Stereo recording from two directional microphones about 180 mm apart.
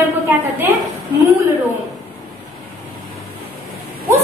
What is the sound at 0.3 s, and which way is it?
Speech, 10° right (ahead or behind).